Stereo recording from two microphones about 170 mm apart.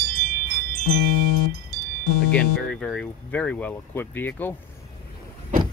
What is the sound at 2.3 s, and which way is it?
Speech, 5° left (ahead or behind).